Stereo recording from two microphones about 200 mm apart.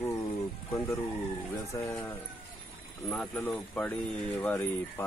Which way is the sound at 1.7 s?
15° left (ahead or behind).